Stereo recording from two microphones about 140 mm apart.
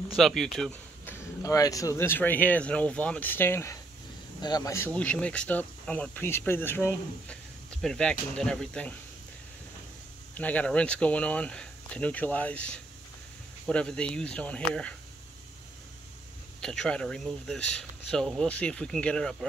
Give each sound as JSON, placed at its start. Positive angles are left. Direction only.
{"t": 0.1, "sound": "speech", "side_deg": 0}
{"t": 1.0, "sound": "speech", "side_deg": 20}
{"t": 4.4, "sound": "speech", "side_deg": 30}
{"t": 7.7, "sound": "speech", "side_deg": 5}
{"t": 10.3, "sound": "speech", "side_deg": 10}
{"t": 16.6, "sound": "speech", "side_deg": 5}